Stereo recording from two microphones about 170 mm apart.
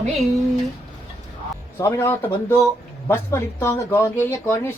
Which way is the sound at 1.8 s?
15° left (ahead or behind).